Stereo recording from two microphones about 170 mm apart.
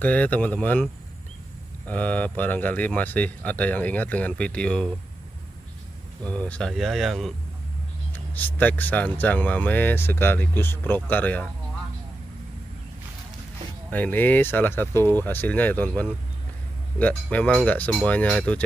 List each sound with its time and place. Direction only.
0.0 s speech: 10° left (ahead or behind)
1.9 s speech: 10° left (ahead or behind)
6.2 s speech: 10° left (ahead or behind)
13.8 s speech: 10° left (ahead or behind)